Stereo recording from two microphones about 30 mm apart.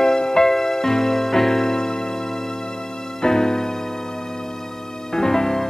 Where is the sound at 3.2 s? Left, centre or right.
Centre.